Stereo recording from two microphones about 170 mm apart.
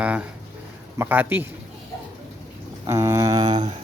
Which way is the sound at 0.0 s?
10° right (ahead or behind).